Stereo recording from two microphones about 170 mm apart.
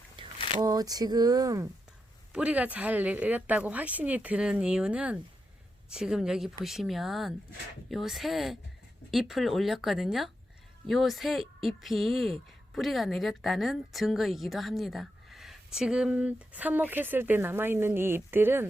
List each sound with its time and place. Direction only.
0.2 s a sound: 30° right (ahead or behind)
0.6 s speech: 20° right (ahead or behind)
2.3 s speech: 5° right (ahead or behind)